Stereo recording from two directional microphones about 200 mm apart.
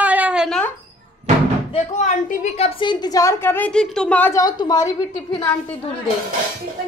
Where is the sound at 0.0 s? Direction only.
5° right (ahead or behind).